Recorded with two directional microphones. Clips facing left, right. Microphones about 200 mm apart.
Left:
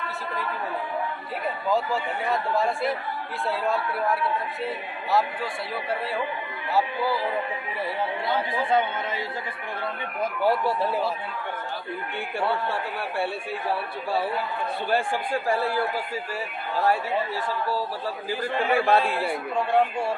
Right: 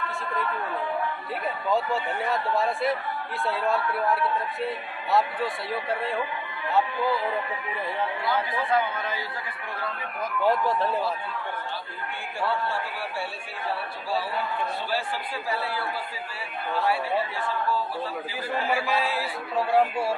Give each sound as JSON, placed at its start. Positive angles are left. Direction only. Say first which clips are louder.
{"t": 1.5, "sound": "speech", "louder": "left 1 dB", "side_deg": 0}
{"t": 8.2, "sound": "speech", "louder": "left 2 dB", "side_deg": 25}
{"t": 10.4, "sound": "speech", "louder": "even", "side_deg": 10}
{"t": 12.6, "sound": "a man's voice", "louder": "left 2 dB", "side_deg": 60}
{"t": 14.8, "sound": "speech", "louder": "left 5 dB", "side_deg": 50}
{"t": 17.4, "sound": "speech", "louder": "even", "side_deg": 40}
{"t": 18.7, "sound": "a man's voice", "louder": "left 6 dB", "side_deg": 60}
{"t": 19.5, "sound": "speech", "louder": "right 1 dB", "side_deg": -5}